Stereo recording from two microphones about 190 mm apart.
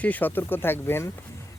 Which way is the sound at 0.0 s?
10° left (ahead or behind).